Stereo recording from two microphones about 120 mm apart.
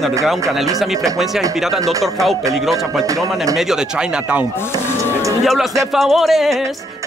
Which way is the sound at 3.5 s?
5° right (ahead or behind).